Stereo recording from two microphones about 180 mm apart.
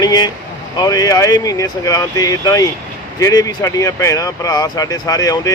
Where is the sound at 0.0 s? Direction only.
20° left (ahead or behind).